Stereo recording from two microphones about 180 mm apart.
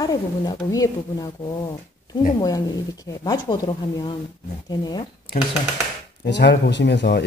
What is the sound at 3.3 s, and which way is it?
Speech, 25° left (ahead or behind).